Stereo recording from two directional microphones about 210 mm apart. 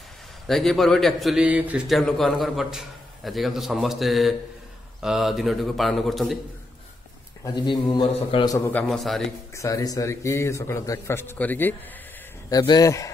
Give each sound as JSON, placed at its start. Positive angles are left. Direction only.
{"t": 0.5, "sound": "a man's voice", "side_deg": 0}
{"t": 7.4, "sound": "a man's voice", "side_deg": 20}
{"t": 8.5, "sound": "a man's voice", "side_deg": 10}
{"t": 9.5, "sound": "a man's voice", "side_deg": 15}